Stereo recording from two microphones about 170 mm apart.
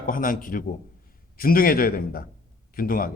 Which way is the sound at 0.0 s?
55° left (ahead or behind).